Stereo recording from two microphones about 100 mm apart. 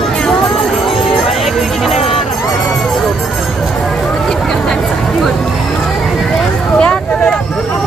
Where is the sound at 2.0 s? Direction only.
75° left (ahead or behind).